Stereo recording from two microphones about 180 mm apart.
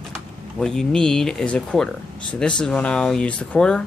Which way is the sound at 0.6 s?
5° left (ahead or behind).